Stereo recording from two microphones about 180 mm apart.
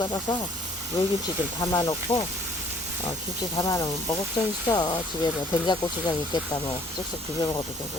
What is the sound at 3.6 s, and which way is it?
Speech, 20° left (ahead or behind).